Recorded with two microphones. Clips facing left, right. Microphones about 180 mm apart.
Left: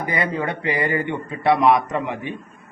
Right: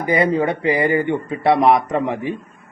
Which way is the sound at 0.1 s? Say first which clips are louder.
Right 8 dB; 30° right (ahead or behind).